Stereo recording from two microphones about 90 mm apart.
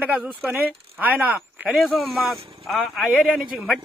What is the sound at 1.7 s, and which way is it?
Speech, centre (ahead or behind).